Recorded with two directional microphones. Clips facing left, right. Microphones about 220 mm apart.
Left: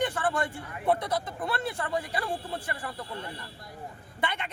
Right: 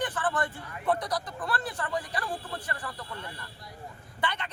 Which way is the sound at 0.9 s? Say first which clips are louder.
Left 2 dB; 25° left (ahead or behind).